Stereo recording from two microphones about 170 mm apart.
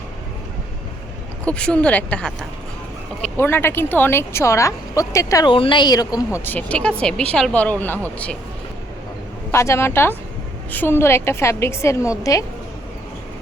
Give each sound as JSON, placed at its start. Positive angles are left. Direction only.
{"t": 1.5, "sound": "speech", "side_deg": 5}
{"t": 6.4, "sound": "a woman's voice", "side_deg": 10}
{"t": 9.5, "sound": "a woman's voice", "side_deg": 15}